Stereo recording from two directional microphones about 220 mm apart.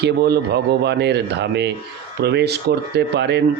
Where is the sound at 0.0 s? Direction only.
50° right (ahead or behind).